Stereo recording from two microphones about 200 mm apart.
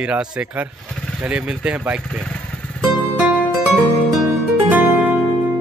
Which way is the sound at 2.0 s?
5° left (ahead or behind).